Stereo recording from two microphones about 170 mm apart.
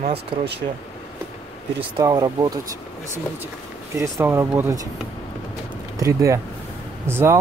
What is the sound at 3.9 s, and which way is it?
Speech, 15° right (ahead or behind).